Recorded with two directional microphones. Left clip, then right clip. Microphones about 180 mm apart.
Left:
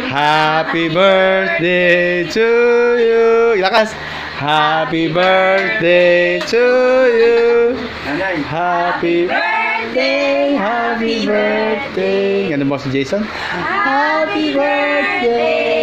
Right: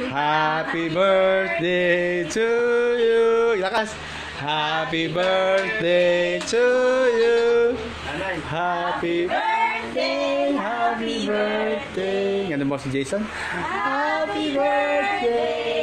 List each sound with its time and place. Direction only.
0.2 s mantra: 10° left (ahead or behind)
4.5 s music: 15° left (ahead or behind)
5.4 s mantra: centre (ahead or behind)